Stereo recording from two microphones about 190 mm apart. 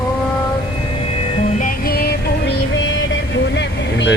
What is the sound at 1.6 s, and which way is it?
Music, 50° left (ahead or behind).